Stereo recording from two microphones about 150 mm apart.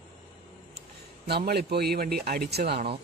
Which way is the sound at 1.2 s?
90° right.